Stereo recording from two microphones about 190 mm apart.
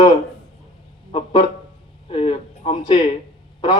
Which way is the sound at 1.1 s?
25° left (ahead or behind).